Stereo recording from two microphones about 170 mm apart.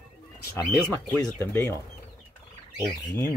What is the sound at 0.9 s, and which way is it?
Speech, 10° left (ahead or behind).